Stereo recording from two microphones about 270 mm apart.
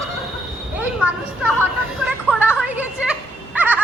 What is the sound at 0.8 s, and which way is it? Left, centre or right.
Speech, centre.